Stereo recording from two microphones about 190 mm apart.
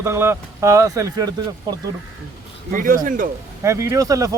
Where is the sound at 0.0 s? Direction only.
15° right (ahead or behind).